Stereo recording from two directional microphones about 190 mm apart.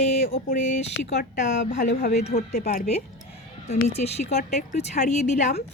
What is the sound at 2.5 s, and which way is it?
Speech, 50° left (ahead or behind).